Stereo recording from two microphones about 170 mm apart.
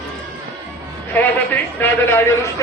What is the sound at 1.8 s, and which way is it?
Speech, 15° left (ahead or behind).